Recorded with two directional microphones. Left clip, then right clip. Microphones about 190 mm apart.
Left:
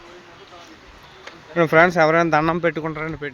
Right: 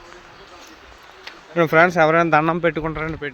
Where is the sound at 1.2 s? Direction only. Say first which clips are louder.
Even; centre (ahead or behind).